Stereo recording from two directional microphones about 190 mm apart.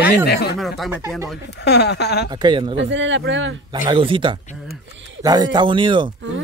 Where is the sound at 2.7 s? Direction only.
75° right (ahead or behind).